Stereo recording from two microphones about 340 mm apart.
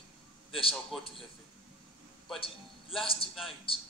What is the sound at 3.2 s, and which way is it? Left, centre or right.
Music, centre.